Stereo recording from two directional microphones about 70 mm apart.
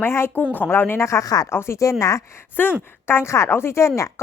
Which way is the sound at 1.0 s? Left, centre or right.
Left.